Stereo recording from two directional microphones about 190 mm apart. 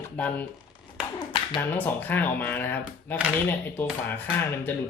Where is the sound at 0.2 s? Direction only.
10° left (ahead or behind).